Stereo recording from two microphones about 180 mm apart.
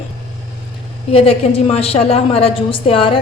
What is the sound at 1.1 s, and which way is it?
A woman's voice, 30° left (ahead or behind).